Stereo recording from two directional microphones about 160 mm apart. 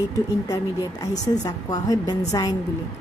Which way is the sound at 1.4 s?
25° left (ahead or behind).